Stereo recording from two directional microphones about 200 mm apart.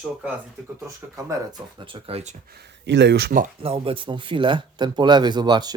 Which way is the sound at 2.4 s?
55° right (ahead or behind).